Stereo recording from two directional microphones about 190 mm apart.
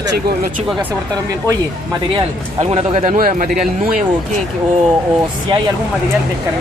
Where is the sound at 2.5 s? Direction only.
30° right (ahead or behind).